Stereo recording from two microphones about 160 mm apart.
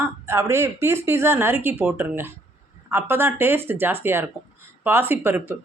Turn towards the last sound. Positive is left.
turn(degrees=-15)  # may be behind; listen again after turning